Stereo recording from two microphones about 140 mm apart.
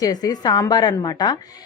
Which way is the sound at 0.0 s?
25° left (ahead or behind).